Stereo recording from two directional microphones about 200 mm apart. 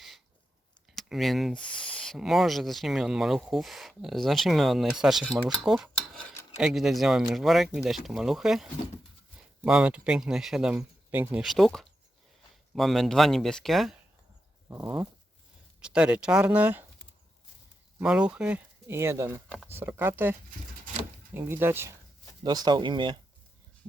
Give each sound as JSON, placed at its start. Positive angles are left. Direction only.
{"t": 0.9, "sound": "speech", "side_deg": 0}
{"t": 9.6, "sound": "speech", "side_deg": -5}
{"t": 14.7, "sound": "speech", "side_deg": -15}
{"t": 15.8, "sound": "speech", "side_deg": -5}
{"t": 18.0, "sound": "speech", "side_deg": -5}
{"t": 21.3, "sound": "speech", "side_deg": -10}